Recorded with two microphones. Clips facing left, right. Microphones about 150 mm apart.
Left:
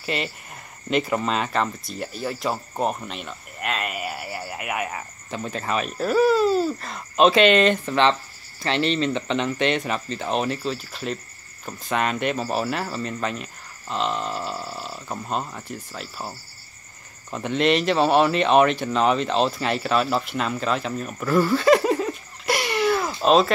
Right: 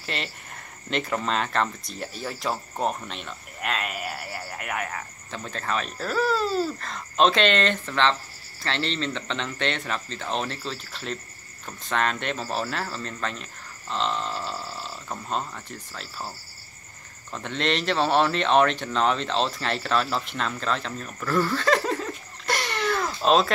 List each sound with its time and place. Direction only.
0.0 s speech: 5° left (ahead or behind)